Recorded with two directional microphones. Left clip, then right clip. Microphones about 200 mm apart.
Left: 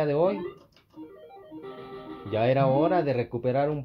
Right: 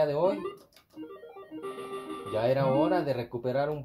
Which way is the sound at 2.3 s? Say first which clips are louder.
Left 3 dB; 45° left (ahead or behind).